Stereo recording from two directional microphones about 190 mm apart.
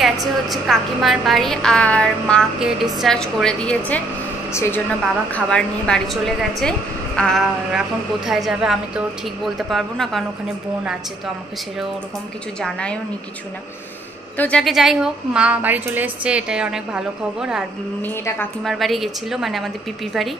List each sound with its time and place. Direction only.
0.0 s a woman's voice: centre (ahead or behind)
12.6 s a woman's voice: 5° left (ahead or behind)
14.3 s a woman's voice: 5° left (ahead or behind)
18.0 s a woman's voice: 10° left (ahead or behind)